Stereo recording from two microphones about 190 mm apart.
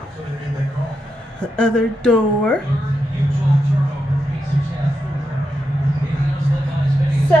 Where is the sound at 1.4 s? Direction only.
5° left (ahead or behind).